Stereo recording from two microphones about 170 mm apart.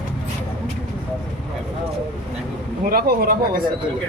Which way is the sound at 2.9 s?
60° right (ahead or behind).